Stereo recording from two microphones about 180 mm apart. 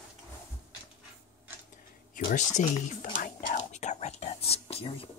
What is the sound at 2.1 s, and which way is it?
Whispering, 45° left (ahead or behind).